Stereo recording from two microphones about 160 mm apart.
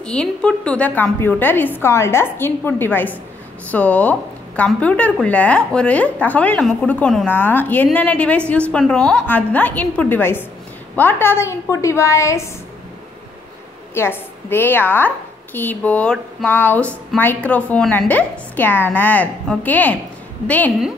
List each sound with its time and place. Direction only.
0.0 s speech: 5° left (ahead or behind)
13.9 s speech: 15° left (ahead or behind)